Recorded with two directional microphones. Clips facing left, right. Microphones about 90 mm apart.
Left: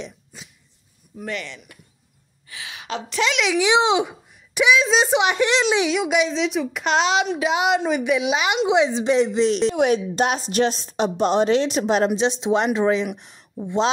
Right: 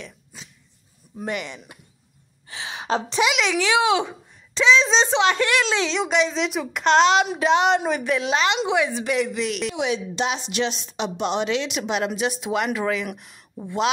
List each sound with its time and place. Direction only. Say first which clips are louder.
0.3 s dog: left 1 dB; centre (ahead or behind)
1.2 s speech: right 1 dB; 15° right (ahead or behind)
2.4 s gasp: right 5 dB; 30° right (ahead or behind)
3.5 s a woman's voice: left 4 dB; 20° left (ahead or behind)
9.8 s a woman's voice: left 6 dB; 50° left (ahead or behind)
12.2 s speech: left 4 dB; 25° left (ahead or behind)